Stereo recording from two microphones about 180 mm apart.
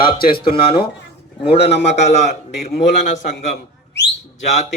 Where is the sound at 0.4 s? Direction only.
30° left (ahead or behind).